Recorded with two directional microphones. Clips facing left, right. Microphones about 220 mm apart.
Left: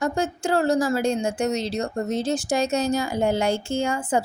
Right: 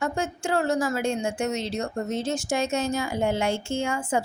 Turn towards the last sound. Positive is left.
turn(degrees=35)  # may be behind; listen again after turning